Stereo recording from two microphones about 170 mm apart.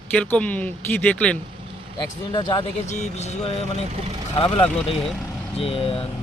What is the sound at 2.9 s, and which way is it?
Speech, 40° left (ahead or behind).